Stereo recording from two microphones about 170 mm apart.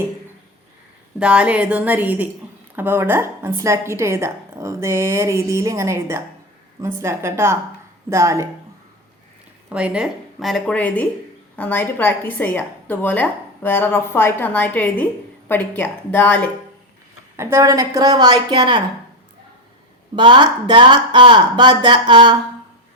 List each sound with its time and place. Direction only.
1.2 s a woman's voice: 5° right (ahead or behind)
9.6 s a woman's voice: 5° right (ahead or behind); by 16.5 s 10° left (ahead or behind)
17.3 s speech: 15° right (ahead or behind)
20.1 s speech: 30° right (ahead or behind)